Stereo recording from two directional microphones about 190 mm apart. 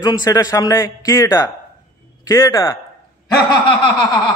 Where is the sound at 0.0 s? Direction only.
20° left (ahead or behind).